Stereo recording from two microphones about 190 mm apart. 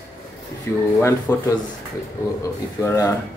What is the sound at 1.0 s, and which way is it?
Speech, 15° left (ahead or behind).